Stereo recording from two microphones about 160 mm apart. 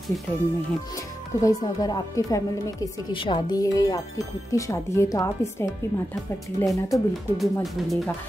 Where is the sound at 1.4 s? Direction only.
25° left (ahead or behind).